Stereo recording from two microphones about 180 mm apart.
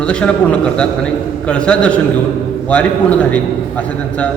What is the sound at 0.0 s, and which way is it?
A man's voice, 5° left (ahead or behind).